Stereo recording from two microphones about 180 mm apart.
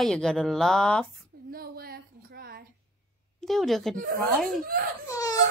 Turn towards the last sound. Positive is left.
turn(degrees=20)  # may be behind; listen again after turning